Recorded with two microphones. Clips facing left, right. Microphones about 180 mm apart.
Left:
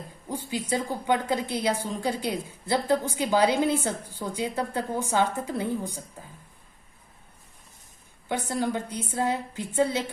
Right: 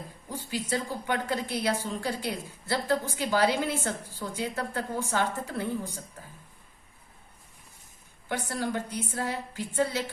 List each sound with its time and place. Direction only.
0.3 s a woman's voice: 20° left (ahead or behind)
8.3 s a woman's voice: 20° left (ahead or behind)